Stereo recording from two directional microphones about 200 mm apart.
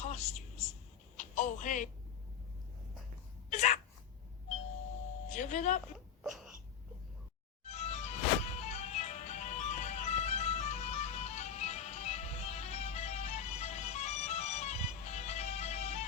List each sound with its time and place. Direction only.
0.0 s a sound: 35° left (ahead or behind)
3.5 s speech: 35° left (ahead or behind)
5.3 s speech: 35° left (ahead or behind)
6.2 s wail: centre (ahead or behind)
7.6 s music: 35° left (ahead or behind)